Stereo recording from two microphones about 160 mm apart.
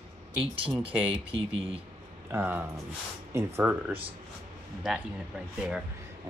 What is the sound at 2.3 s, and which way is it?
Speech, 10° right (ahead or behind).